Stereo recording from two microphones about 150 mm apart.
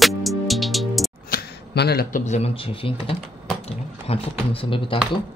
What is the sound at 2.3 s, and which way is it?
Speech, 40° left (ahead or behind).